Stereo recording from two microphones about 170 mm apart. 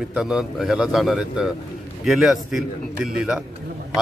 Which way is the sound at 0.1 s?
5° right (ahead or behind).